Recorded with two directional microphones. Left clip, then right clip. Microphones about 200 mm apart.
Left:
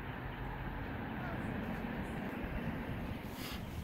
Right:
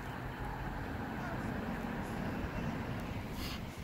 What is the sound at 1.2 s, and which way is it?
Vehicle, 10° right (ahead or behind).